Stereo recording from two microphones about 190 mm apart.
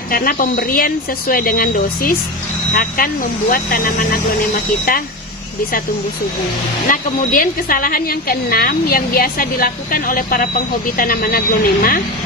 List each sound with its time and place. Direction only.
0.1 s a woman's voice: 50° left (ahead or behind)
6.9 s a woman's voice: 45° left (ahead or behind)